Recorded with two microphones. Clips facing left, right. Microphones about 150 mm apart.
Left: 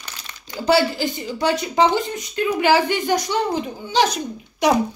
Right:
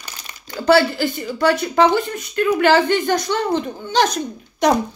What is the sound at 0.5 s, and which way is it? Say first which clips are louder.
Speech: right 3 dB; 15° left (ahead or behind).